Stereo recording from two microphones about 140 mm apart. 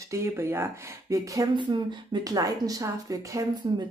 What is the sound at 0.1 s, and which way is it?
Speech, 20° right (ahead or behind).